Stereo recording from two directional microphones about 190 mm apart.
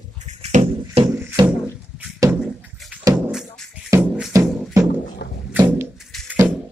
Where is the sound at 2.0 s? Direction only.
15° right (ahead or behind).